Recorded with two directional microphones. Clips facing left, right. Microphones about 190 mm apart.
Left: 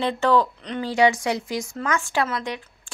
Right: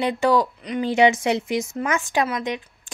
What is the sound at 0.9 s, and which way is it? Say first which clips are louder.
Speech: right 2 dB; 20° right (ahead or behind).